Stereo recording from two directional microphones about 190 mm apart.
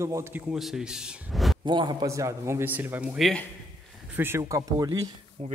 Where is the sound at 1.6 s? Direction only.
25° right (ahead or behind); by 3.4 s centre (ahead or behind).